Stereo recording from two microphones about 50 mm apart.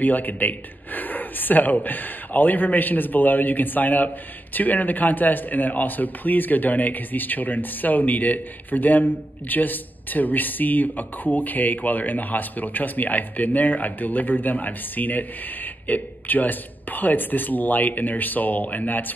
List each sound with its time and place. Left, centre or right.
0.0 s a man's voice: left